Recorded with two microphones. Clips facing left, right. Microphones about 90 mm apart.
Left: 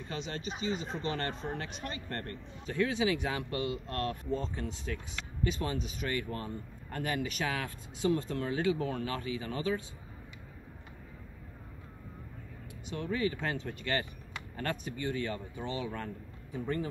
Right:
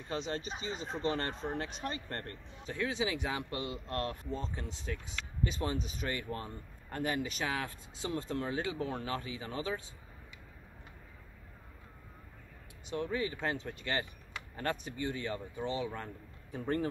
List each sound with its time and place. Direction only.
0.1 s speech: 30° right (ahead or behind)
6.0 s speech: 25° right (ahead or behind)
12.9 s speech: 25° right (ahead or behind)